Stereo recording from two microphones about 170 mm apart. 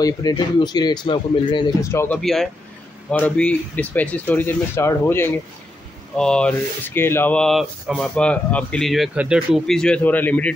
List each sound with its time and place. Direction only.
0.0 s speech: 25° left (ahead or behind)
2.1 s speech: centre (ahead or behind)